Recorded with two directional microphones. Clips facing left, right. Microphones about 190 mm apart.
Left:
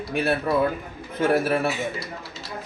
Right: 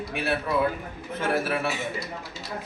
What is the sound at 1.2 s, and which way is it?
Speech, 40° left (ahead or behind).